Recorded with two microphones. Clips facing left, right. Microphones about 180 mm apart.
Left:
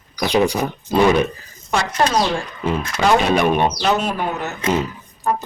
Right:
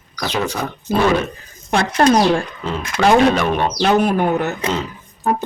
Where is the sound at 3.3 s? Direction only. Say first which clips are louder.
Left 2 dB; 15° left (ahead or behind).